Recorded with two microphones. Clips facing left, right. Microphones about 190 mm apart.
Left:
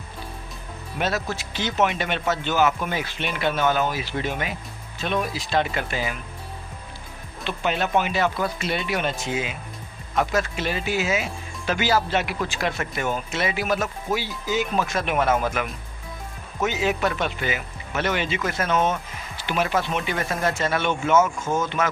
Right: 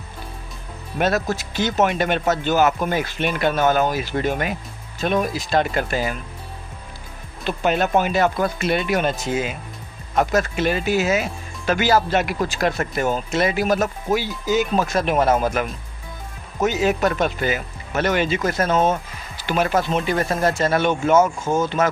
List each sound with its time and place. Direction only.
0.9 s speech: 50° right (ahead or behind)
7.4 s speech: 45° right (ahead or behind)
16.6 s speech: 45° right (ahead or behind)